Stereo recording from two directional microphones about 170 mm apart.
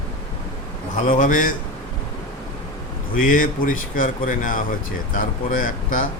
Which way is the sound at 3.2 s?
50° left (ahead or behind).